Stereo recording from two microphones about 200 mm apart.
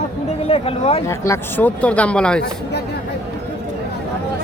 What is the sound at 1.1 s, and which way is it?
Speech, 10° left (ahead or behind).